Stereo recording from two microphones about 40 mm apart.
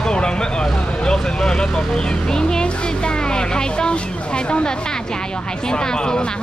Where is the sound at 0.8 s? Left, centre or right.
Left.